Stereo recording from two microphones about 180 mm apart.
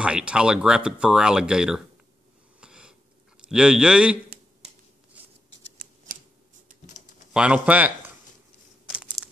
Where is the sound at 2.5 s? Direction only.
5° right (ahead or behind).